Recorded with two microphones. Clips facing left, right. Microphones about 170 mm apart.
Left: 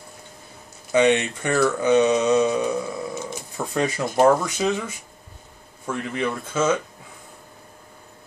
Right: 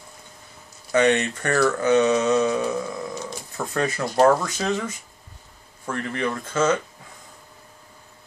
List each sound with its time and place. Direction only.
0.9 s speech: 15° left (ahead or behind)
3.2 s bird: 20° left (ahead or behind)
4.1 s speech: 15° left (ahead or behind)